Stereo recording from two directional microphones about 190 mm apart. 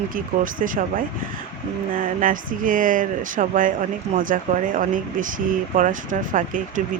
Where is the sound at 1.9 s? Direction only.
45° right (ahead or behind).